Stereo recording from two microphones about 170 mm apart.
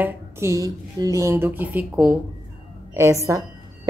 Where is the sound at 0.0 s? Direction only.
15° right (ahead or behind).